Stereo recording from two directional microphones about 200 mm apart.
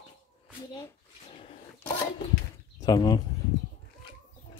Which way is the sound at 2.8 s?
20° left (ahead or behind).